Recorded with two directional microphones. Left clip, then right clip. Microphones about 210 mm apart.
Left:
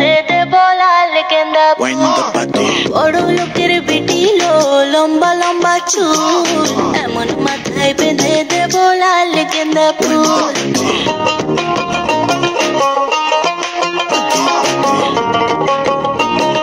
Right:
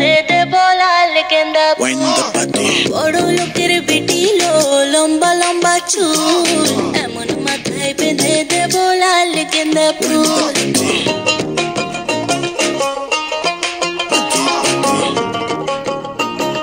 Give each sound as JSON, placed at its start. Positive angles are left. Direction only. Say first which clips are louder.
{"t": 0.0, "sound": "music", "louder": "left 1 dB", "side_deg": 20}
{"t": 7.8, "sound": "music", "louder": "left 4 dB", "side_deg": 25}
{"t": 14.1, "sound": "music", "louder": "left 2 dB", "side_deg": 30}